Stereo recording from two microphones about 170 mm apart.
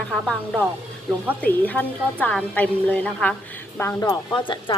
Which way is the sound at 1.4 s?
10° left (ahead or behind).